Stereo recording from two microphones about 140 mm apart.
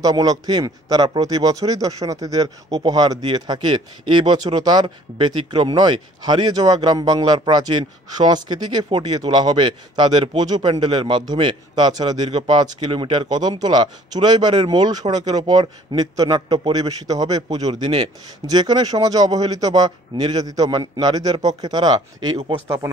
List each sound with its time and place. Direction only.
0.0 s a man's voice: 25° right (ahead or behind)